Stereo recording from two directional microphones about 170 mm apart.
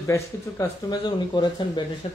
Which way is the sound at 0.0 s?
20° left (ahead or behind).